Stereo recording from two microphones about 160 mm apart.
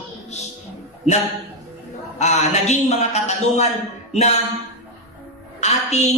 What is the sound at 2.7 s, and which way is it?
Speech, 45° left (ahead or behind).